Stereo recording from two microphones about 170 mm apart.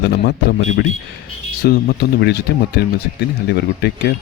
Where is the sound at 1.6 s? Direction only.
70° left (ahead or behind).